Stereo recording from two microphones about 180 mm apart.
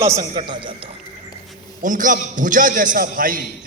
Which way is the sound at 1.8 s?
45° right (ahead or behind).